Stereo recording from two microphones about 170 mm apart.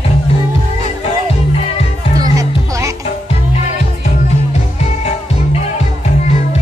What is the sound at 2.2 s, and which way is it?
Music, 20° right (ahead or behind).